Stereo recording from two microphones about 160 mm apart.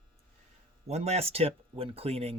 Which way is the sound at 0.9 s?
45° right (ahead or behind).